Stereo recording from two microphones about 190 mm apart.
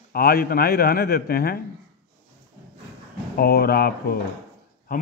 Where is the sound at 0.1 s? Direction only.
55° left (ahead or behind).